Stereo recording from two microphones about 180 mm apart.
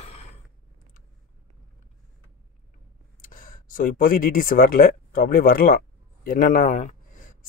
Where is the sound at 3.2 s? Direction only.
50° left (ahead or behind).